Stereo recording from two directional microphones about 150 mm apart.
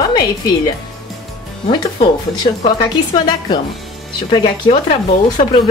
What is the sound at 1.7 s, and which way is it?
Speech, 30° left (ahead or behind).